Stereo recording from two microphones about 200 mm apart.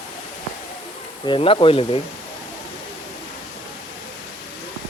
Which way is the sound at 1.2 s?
25° left (ahead or behind).